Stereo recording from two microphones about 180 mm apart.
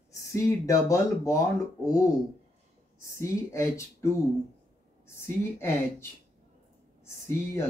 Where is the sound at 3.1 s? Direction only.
15° left (ahead or behind).